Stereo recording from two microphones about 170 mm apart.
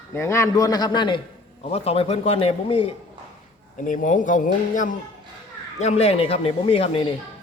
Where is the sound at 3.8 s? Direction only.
50° left (ahead or behind).